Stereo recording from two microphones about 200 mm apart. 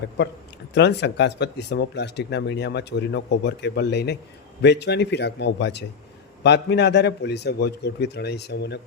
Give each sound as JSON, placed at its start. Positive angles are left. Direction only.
{"t": 0.7, "sound": "speech", "side_deg": 60}